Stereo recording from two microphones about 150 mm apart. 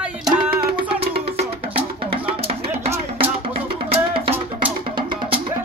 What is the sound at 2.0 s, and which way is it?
Music, 40° right (ahead or behind).